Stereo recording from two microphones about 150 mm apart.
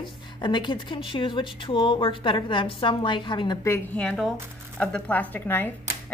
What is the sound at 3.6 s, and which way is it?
Speech, 15° left (ahead or behind).